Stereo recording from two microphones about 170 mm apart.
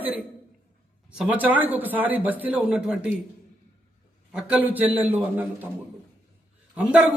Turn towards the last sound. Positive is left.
turn(degrees=-10)  # may be behind; listen again after turning